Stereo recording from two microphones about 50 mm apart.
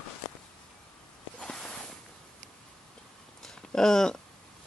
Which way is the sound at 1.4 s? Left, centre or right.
Centre.